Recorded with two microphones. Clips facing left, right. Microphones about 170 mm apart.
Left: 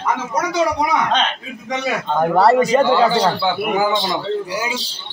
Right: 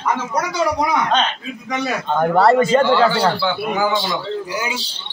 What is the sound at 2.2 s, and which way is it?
A man's voice, 10° left (ahead or behind).